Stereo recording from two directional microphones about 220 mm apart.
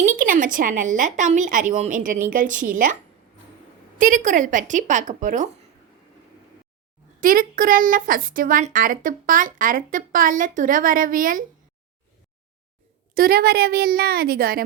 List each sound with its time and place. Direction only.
0.0 s a woman's voice: 35° right (ahead or behind)
7.2 s a woman's voice: 40° right (ahead or behind)
13.1 s a woman's voice: 40° right (ahead or behind)